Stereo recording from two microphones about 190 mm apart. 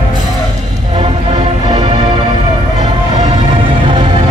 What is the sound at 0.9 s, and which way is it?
Music, 30° right (ahead or behind).